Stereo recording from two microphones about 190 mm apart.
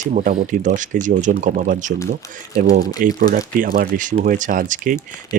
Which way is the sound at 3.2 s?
50° right (ahead or behind).